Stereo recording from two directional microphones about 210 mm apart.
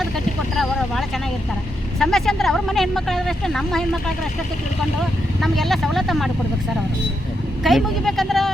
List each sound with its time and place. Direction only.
0.5 s vehicle: centre (ahead or behind)
2.0 s speech: centre (ahead or behind)
5.4 s speech: centre (ahead or behind)
7.6 s speech: centre (ahead or behind)